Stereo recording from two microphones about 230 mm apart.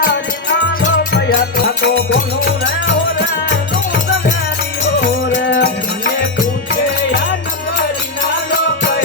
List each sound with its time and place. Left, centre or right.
1.1 s music: left
4.9 s music: left
5.4 s music: left